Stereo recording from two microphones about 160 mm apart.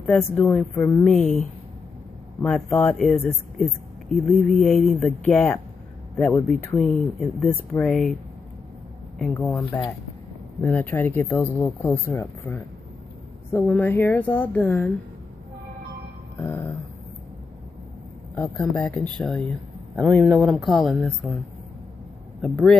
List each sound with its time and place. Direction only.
0.0 s speech: 5° left (ahead or behind)
2.4 s speech: 10° left (ahead or behind)
9.3 s speech: 15° left (ahead or behind)
16.3 s a sound: 15° left (ahead or behind)
18.3 s speech: 10° left (ahead or behind)
22.4 s speech: 5° left (ahead or behind)